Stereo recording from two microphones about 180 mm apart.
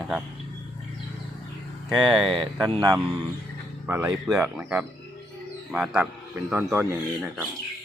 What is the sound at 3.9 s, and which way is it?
Speech, 15° right (ahead or behind).